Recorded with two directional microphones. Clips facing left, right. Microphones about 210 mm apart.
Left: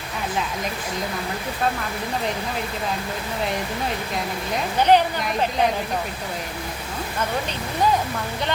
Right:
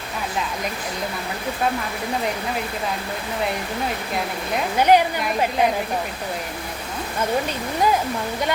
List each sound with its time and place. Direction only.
4.8 s a woman's voice: 10° right (ahead or behind)